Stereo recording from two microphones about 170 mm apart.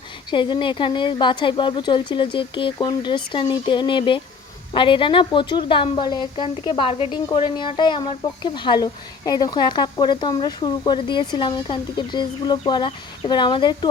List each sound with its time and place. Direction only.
0.3 s a woman's voice: 30° left (ahead or behind)